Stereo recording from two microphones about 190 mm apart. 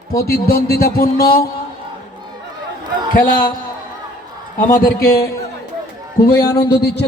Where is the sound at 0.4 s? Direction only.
55° left (ahead or behind).